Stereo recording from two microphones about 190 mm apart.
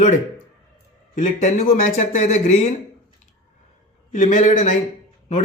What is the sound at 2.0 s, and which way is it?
Speech, 35° left (ahead or behind).